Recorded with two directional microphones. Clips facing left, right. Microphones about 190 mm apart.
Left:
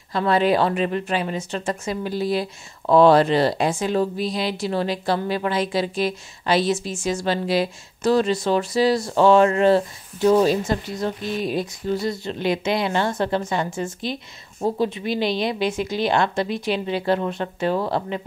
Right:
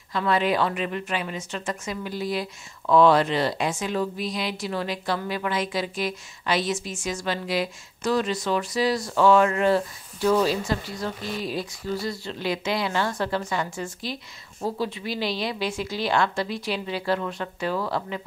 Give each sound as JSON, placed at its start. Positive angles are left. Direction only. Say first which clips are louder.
{"t": 0.1, "sound": "a woman's voice", "louder": "left 4 dB", "side_deg": 35}